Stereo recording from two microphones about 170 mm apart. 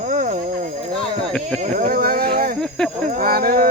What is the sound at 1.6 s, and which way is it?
Speech, 60° right (ahead or behind).